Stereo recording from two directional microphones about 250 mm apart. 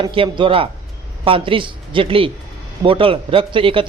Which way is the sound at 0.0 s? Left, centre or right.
Centre.